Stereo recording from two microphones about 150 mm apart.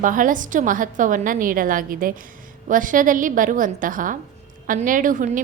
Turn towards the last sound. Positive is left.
turn(degrees=-60)  # may be behind; listen again after turning